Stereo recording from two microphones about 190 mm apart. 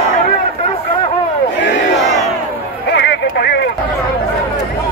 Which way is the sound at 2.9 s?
65° left (ahead or behind).